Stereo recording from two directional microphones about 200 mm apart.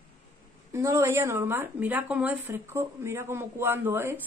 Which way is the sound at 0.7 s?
15° right (ahead or behind).